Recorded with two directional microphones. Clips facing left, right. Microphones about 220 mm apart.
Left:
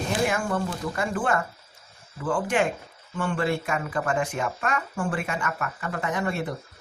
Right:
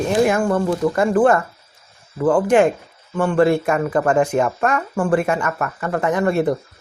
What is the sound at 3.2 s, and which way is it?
Speech, 45° right (ahead or behind).